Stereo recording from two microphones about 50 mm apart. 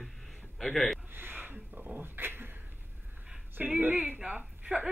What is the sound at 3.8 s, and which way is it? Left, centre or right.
Speech, right.